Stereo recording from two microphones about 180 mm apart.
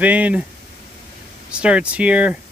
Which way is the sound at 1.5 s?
5° right (ahead or behind).